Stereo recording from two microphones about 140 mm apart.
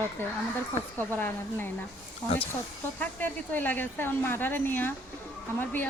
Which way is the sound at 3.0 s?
10° left (ahead or behind).